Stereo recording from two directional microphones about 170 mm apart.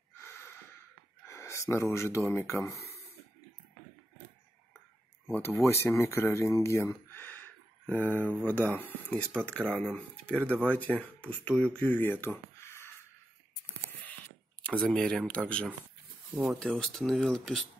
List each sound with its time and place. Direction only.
0.2 s snort: 15° left (ahead or behind)
1.2 s speech: 15° left (ahead or behind)
5.3 s speech: 15° left (ahead or behind)
14.6 s speech: 5° left (ahead or behind)